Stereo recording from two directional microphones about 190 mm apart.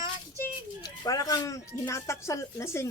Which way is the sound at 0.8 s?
20° left (ahead or behind).